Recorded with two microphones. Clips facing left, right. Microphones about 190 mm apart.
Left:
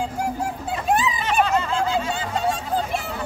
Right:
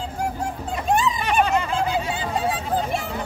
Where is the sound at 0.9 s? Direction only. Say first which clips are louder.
Right 1 dB; centre (ahead or behind).